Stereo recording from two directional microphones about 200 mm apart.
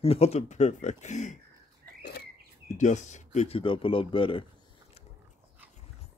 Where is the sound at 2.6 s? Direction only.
35° left (ahead or behind).